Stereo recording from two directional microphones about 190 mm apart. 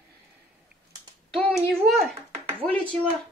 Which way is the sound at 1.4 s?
5° left (ahead or behind).